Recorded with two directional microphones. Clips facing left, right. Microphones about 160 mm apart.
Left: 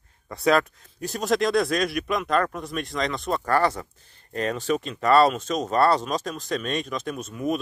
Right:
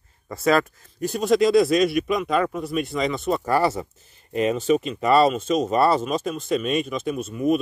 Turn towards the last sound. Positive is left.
turn(degrees=-5)  # may be behind; listen again after turning